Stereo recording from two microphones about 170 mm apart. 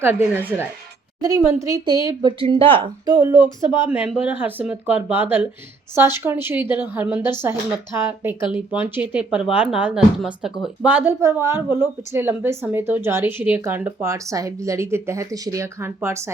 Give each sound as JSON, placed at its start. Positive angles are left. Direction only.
{"t": 0.0, "sound": "a woman's voice", "side_deg": -10}
{"t": 3.8, "sound": "speech", "side_deg": -5}
{"t": 8.4, "sound": "speech", "side_deg": 30}
{"t": 8.7, "sound": "speech", "side_deg": -10}